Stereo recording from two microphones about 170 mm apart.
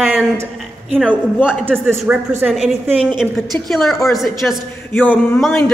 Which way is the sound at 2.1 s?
10° right (ahead or behind).